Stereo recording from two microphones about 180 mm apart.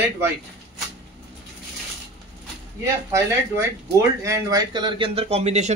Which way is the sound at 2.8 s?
15° right (ahead or behind).